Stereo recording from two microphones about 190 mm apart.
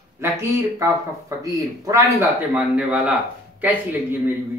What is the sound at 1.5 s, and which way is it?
Speech, 15° right (ahead or behind).